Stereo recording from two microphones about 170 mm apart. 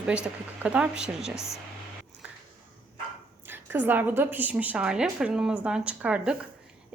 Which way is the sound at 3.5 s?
10° right (ahead or behind).